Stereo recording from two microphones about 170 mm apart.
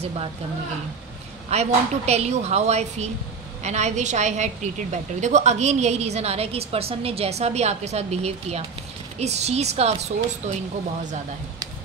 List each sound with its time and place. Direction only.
1.5 s a woman's voice: 40° right (ahead or behind)